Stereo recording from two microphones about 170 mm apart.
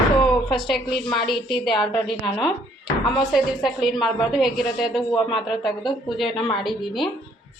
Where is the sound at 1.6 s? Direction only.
25° left (ahead or behind).